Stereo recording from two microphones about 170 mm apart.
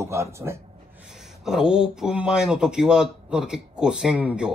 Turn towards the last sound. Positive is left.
turn(degrees=-5)  # may be behind; listen again after turning